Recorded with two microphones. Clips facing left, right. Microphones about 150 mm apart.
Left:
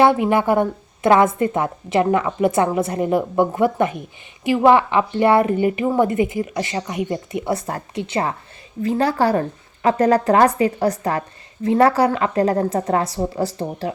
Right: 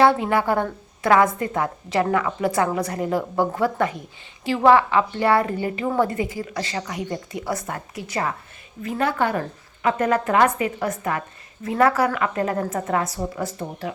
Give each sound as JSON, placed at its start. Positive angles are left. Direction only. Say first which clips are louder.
{"t": 0.0, "sound": "a woman's voice", "louder": "left 3 dB", "side_deg": 15}